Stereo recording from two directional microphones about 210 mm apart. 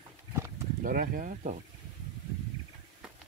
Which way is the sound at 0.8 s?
40° right (ahead or behind).